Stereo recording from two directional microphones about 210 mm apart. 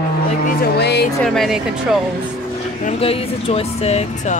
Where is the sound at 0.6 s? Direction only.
50° left (ahead or behind).